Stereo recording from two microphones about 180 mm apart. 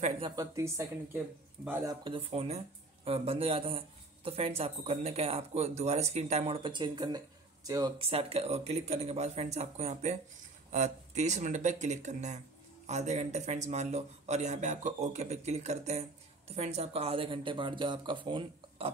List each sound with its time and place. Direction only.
0.4 s speech: 15° right (ahead or behind)
1.9 s speech: 30° right (ahead or behind)
8.0 s speech: 30° right (ahead or behind)